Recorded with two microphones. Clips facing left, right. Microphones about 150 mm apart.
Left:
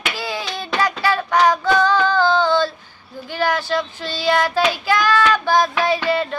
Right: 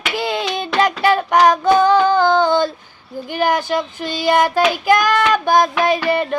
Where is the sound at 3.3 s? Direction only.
15° right (ahead or behind).